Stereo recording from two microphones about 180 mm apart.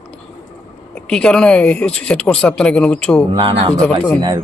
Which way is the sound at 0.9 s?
5° left (ahead or behind).